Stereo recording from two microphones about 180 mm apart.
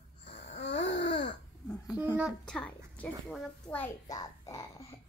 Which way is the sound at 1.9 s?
5° right (ahead or behind).